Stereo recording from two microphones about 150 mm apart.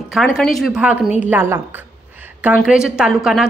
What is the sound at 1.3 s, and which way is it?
Speech, 15° right (ahead or behind).